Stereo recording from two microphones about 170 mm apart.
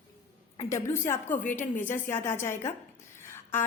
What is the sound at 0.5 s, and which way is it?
Speech, 15° left (ahead or behind).